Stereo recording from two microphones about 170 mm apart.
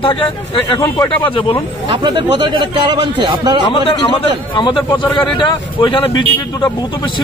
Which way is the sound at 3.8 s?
30° left (ahead or behind).